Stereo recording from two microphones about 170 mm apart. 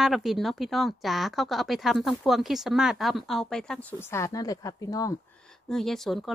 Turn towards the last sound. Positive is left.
turn(degrees=0)  # may be behind; listen again after turning